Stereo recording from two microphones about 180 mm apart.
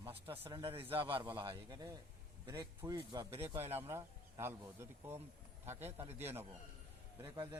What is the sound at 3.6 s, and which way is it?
Speech, 10° right (ahead or behind).